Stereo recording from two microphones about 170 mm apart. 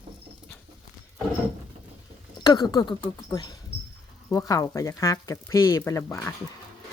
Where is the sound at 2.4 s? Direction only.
25° left (ahead or behind).